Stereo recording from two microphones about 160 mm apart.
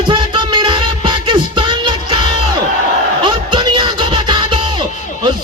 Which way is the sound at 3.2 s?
30° right (ahead or behind).